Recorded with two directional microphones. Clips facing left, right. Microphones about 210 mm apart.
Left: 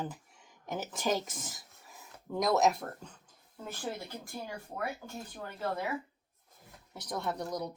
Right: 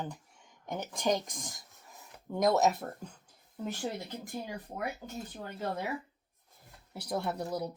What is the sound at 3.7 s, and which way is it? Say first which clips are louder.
Speech: right 1 dB; 20° right (ahead or behind).